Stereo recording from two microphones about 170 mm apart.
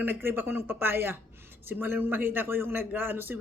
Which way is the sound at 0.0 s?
10° right (ahead or behind).